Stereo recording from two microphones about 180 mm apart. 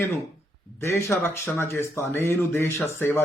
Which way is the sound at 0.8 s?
15° left (ahead or behind).